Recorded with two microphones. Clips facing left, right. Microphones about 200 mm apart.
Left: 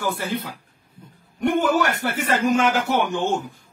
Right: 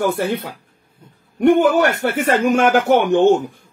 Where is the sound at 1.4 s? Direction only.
55° right (ahead or behind).